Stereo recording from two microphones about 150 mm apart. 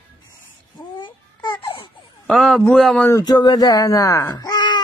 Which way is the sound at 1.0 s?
30° left (ahead or behind).